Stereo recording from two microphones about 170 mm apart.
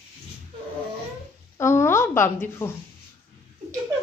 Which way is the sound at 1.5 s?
15° left (ahead or behind).